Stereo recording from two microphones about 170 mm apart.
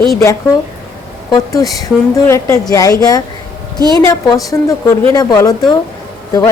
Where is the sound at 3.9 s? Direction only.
20° left (ahead or behind).